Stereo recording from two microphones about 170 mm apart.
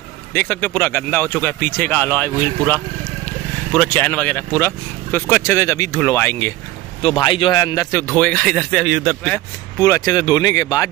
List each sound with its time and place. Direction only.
0.3 s speech: 10° left (ahead or behind)
3.7 s speech: 5° left (ahead or behind)
7.2 s speech: 30° left (ahead or behind)
8.2 s speech: 5° left (ahead or behind)
9.8 s speech: 20° left (ahead or behind)